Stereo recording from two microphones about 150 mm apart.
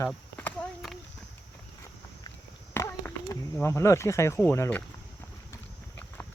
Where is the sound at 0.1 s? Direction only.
10° left (ahead or behind).